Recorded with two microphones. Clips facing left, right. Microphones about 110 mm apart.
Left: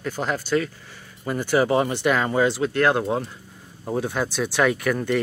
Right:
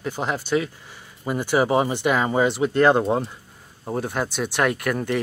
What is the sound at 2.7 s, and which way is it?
Speech, 20° right (ahead or behind).